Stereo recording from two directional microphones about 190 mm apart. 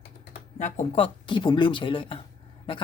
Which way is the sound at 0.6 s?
35° left (ahead or behind).